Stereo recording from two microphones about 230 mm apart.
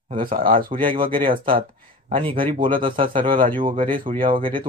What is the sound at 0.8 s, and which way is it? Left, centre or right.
Speech, right.